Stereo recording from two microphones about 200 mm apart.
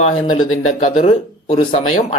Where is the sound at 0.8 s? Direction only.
30° left (ahead or behind).